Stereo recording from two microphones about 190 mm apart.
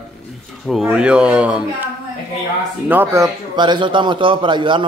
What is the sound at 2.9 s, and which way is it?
A man's voice, 10° right (ahead or behind).